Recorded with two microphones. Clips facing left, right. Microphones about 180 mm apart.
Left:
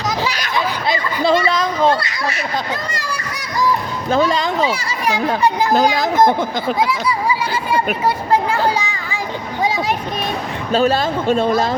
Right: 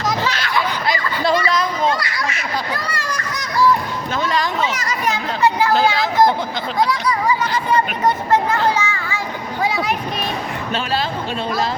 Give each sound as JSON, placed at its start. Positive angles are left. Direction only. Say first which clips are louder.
{"t": 0.3, "sound": "a sound", "louder": "even", "side_deg": 15}
{"t": 4.1, "sound": "speech", "louder": "left 8 dB", "side_deg": 35}
{"t": 4.7, "sound": "speech", "louder": "left 2 dB", "side_deg": 10}
{"t": 5.7, "sound": "speech", "louder": "left 2 dB", "side_deg": 45}
{"t": 6.7, "sound": "speech", "louder": "right 4 dB", "side_deg": 5}
{"t": 10.7, "sound": "speech", "louder": "left 8 dB", "side_deg": 40}